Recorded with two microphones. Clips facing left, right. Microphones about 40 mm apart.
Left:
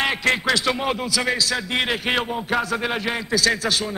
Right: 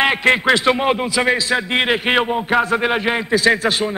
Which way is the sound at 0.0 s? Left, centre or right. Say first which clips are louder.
Right 6 dB; right.